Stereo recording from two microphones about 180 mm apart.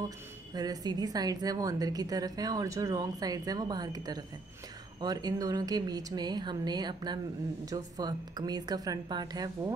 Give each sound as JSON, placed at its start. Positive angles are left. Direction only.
{"t": 0.6, "sound": "a woman's voice", "side_deg": -20}